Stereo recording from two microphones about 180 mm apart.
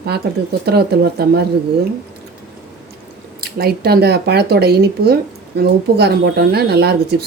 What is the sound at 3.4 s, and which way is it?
Speech, 60° right (ahead or behind).